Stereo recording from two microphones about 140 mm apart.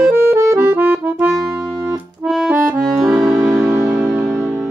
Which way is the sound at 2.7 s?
10° right (ahead or behind).